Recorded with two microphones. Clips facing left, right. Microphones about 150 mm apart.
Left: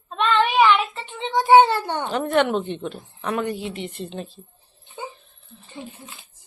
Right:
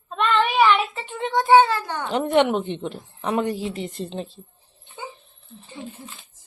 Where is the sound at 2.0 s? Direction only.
20° right (ahead or behind).